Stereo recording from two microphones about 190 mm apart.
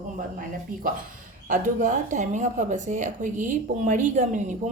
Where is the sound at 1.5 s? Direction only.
40° right (ahead or behind).